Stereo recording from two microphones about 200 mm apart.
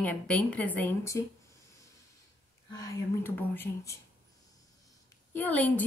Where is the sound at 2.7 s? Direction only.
15° left (ahead or behind).